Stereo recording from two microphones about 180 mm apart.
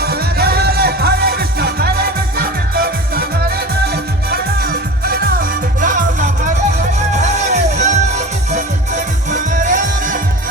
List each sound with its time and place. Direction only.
0.0 s music: 60° right (ahead or behind)
4.3 s music: 55° right (ahead or behind)